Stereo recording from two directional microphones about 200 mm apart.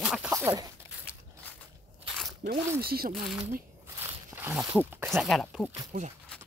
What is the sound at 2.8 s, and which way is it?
Speech, 50° right (ahead or behind).